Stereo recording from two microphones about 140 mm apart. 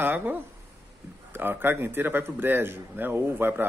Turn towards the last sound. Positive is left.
turn(degrees=-15)  # may be behind; listen again after turning